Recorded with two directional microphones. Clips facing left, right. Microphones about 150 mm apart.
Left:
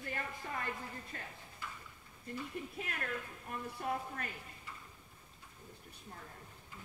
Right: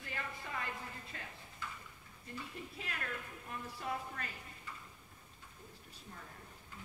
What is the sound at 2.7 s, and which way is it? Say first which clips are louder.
A woman's voice: left 1 dB; 50° left (ahead or behind).